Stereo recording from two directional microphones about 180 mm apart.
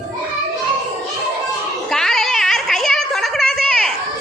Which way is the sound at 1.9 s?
Centre (ahead or behind).